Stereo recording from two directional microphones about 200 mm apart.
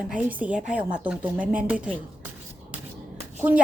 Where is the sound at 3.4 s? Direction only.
10° right (ahead or behind).